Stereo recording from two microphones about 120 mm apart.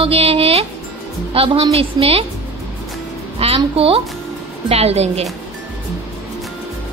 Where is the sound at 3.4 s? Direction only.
55° right (ahead or behind).